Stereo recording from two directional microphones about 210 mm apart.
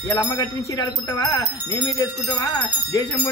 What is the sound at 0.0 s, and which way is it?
Speech, 15° left (ahead or behind).